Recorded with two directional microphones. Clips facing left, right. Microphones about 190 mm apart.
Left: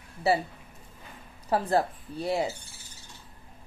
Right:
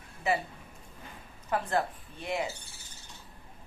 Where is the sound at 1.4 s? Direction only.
35° left (ahead or behind).